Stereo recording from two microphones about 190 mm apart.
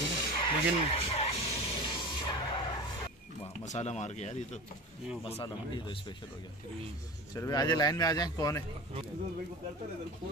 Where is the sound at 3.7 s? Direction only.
35° left (ahead or behind).